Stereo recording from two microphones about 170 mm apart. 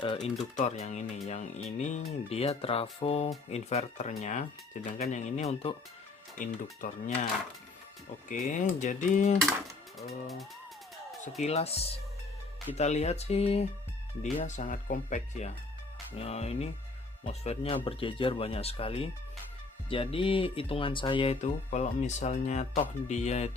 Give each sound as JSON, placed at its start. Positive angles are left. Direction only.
{"t": 0.0, "sound": "speech", "side_deg": 30}
{"t": 6.4, "sound": "speech", "side_deg": 50}
{"t": 8.3, "sound": "speech", "side_deg": 50}
{"t": 10.1, "sound": "speech", "side_deg": 0}
{"t": 11.2, "sound": "speech", "side_deg": 40}
{"t": 21.4, "sound": "speech", "side_deg": 45}